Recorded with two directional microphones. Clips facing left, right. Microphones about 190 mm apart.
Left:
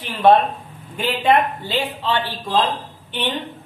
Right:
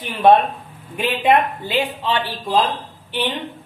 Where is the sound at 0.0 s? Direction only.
Centre (ahead or behind).